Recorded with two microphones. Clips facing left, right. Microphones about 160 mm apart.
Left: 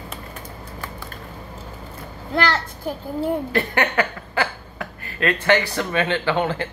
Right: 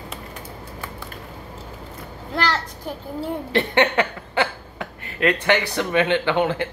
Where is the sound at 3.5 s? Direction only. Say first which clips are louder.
Right 3 dB; 25° right (ahead or behind).